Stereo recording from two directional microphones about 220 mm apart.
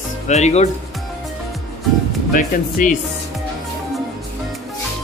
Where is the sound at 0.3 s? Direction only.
30° left (ahead or behind).